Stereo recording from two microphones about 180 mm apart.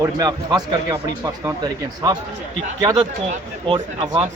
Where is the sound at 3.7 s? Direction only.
30° right (ahead or behind).